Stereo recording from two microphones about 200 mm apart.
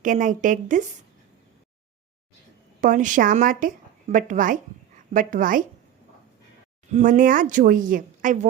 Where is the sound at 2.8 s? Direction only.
40° right (ahead or behind).